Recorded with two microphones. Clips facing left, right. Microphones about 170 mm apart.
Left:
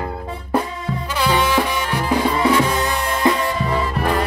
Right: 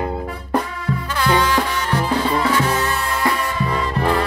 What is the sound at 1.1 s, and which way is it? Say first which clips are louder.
Music: even; 15° left (ahead or behind).